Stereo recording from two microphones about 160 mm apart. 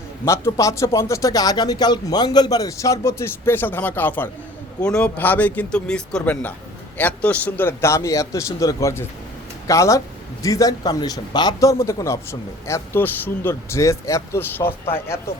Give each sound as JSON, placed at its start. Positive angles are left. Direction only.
{"t": 0.3, "sound": "a man's voice", "side_deg": 20}